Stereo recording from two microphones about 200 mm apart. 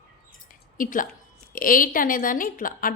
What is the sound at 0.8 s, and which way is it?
A woman's voice, 40° left (ahead or behind).